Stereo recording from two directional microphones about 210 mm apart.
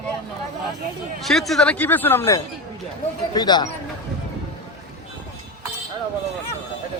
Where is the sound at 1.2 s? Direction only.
Centre (ahead or behind); by 3.7 s 20° left (ahead or behind).